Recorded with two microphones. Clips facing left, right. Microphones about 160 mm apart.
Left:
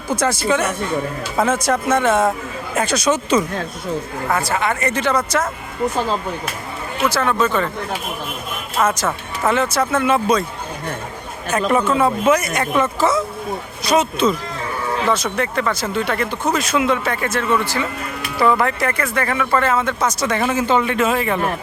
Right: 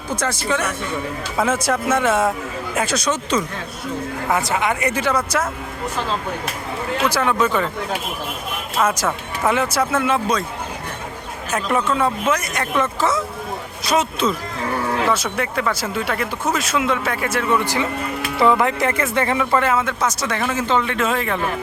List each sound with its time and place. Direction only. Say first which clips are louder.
0.2 s speech: left 4 dB; 5° left (ahead or behind)
1.4 s speech: left 2 dB; 5° right (ahead or behind)
4.3 s speech: even; 15° right (ahead or behind)
7.1 s speech: left 2 dB; 10° right (ahead or behind)
8.8 s speech: left 1 dB; 10° right (ahead or behind)
10.1 s speech: left 3 dB; 5° left (ahead or behind)
11.7 s speech: left 2 dB; 5° left (ahead or behind)
20.4 s speech: left 2 dB; 10° left (ahead or behind)